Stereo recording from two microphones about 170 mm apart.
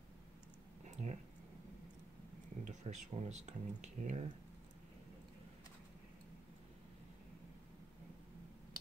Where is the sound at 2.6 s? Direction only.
45° right (ahead or behind).